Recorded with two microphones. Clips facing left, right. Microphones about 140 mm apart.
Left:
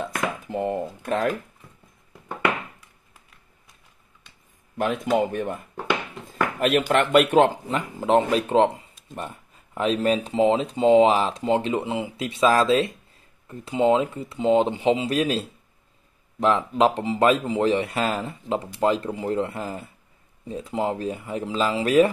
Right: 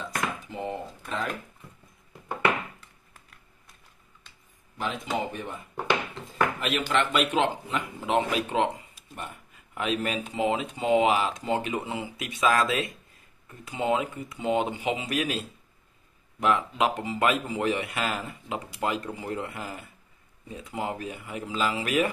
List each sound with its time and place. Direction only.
0.0 s speech: 55° left (ahead or behind)
4.7 s speech: 55° left (ahead or behind)
6.6 s speech: 50° left (ahead or behind)
9.3 s a sound: 35° left (ahead or behind)
10.0 s speech: 35° left (ahead or behind)